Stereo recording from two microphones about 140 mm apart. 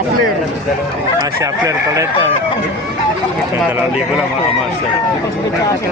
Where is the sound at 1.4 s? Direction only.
25° right (ahead or behind).